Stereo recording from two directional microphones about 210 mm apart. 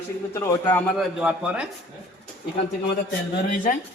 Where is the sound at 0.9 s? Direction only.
5° right (ahead or behind).